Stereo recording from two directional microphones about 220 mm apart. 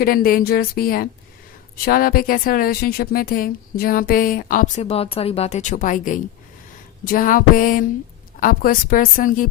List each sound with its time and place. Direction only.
0.0 s a woman's voice: 40° left (ahead or behind)